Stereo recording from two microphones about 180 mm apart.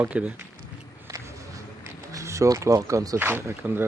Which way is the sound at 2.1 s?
15° right (ahead or behind).